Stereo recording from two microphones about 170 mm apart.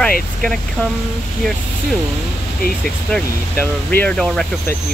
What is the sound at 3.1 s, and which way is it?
Speech, 10° left (ahead or behind).